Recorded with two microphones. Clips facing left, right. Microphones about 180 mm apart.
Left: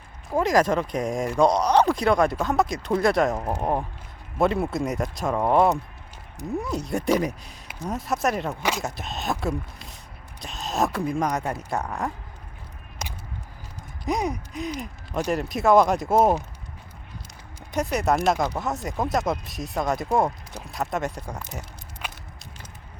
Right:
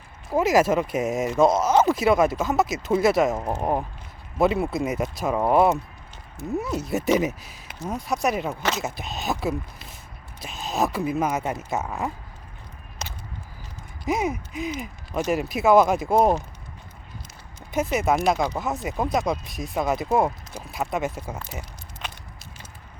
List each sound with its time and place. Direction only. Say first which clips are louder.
0.3 s speech: right 1 dB; 5° right (ahead or behind)
13.0 s a sound: left 1 dB; 10° left (ahead or behind)
14.0 s speech: right 1 dB; 5° right (ahead or behind)
17.7 s speech: right 1 dB; centre (ahead or behind)
22.0 s walk: even; 5° left (ahead or behind)